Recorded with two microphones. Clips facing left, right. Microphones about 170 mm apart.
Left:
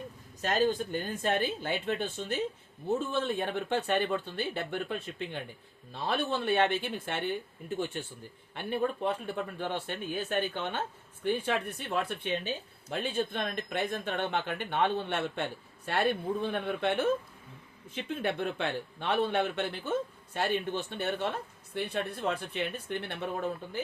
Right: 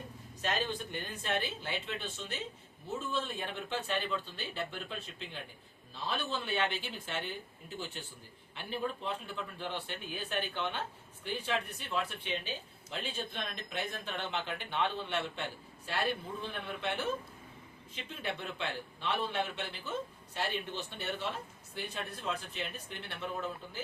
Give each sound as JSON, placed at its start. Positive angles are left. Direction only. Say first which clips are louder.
{"t": 0.4, "sound": "a man's voice", "louder": "left 7 dB", "side_deg": 45}
{"t": 8.5, "sound": "a man's voice", "louder": "left 6 dB", "side_deg": 55}